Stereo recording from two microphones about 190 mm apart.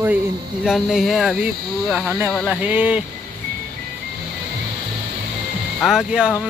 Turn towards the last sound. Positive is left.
turn(degrees=-5)  # may be behind; listen again after turning